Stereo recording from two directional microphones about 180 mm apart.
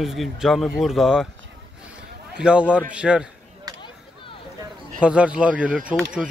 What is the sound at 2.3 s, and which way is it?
Speech, 5° right (ahead or behind).